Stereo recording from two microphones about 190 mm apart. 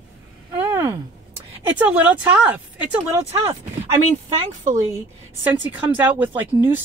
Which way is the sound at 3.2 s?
30° right (ahead or behind).